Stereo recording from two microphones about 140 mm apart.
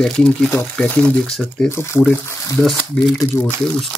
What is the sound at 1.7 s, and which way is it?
Speech, 20° left (ahead or behind).